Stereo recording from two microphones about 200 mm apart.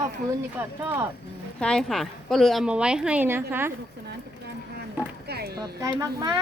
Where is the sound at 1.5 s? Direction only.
5° left (ahead or behind); by 3.7 s 10° right (ahead or behind).